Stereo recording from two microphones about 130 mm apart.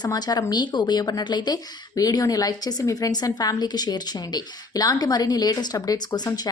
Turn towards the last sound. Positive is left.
turn(degrees=30)  # may be behind; listen again after turning